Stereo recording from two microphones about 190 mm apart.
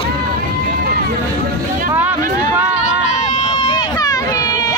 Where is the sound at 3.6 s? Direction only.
20° left (ahead or behind).